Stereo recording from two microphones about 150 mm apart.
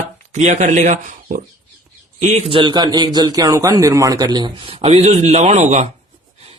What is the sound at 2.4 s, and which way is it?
Speech, 35° right (ahead or behind).